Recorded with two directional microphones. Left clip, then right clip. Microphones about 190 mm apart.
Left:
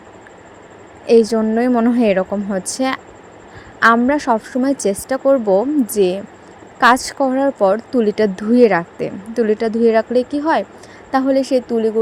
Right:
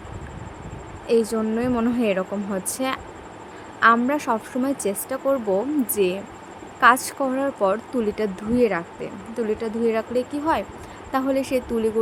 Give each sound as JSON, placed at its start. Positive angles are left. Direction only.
{"t": 1.0, "sound": "a woman's voice", "side_deg": 35}